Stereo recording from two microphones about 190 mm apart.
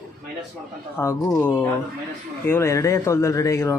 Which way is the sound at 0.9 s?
15° left (ahead or behind).